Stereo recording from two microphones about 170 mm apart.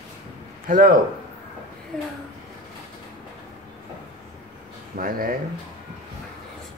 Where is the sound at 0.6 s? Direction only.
55° right (ahead or behind).